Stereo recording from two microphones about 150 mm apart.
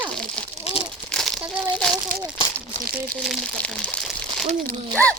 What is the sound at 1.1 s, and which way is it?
Crumpling, 5° left (ahead or behind).